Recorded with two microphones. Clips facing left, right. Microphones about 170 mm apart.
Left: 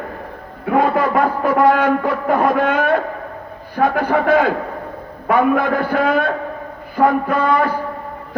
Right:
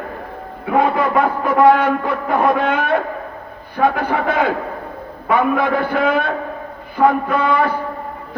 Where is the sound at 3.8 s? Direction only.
55° right (ahead or behind).